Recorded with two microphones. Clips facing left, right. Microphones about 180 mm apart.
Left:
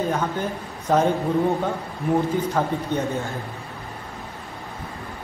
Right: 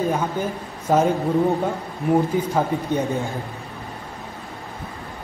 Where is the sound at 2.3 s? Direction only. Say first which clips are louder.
Right 2 dB; 10° right (ahead or behind).